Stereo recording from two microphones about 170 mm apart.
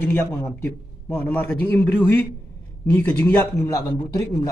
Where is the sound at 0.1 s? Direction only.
15° left (ahead or behind).